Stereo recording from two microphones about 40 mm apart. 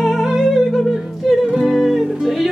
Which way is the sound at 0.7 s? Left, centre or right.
Centre.